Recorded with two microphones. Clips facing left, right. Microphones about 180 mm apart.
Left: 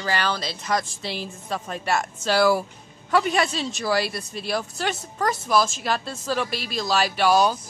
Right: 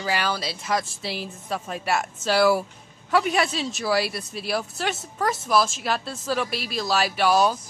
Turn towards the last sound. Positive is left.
turn(degrees=0)  # may be behind; listen again after turning